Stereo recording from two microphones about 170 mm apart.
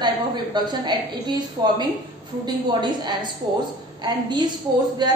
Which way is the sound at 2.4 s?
25° right (ahead or behind).